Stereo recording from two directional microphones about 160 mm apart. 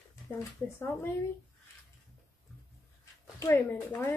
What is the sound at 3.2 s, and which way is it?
Speech, 20° left (ahead or behind).